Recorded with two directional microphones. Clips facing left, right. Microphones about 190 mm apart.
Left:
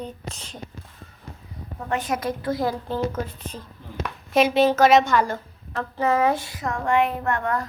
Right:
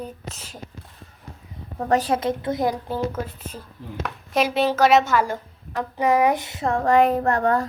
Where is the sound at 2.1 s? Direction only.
25° right (ahead or behind).